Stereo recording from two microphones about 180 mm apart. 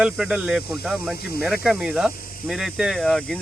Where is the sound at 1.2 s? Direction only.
60° left (ahead or behind).